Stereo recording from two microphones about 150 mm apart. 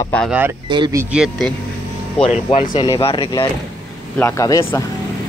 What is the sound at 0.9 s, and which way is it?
Speech, 5° right (ahead or behind).